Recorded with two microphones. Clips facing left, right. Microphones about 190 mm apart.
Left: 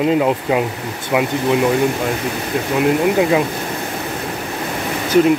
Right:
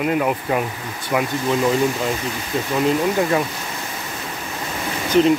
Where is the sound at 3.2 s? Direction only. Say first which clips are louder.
Left 4 dB; 15° left (ahead or behind).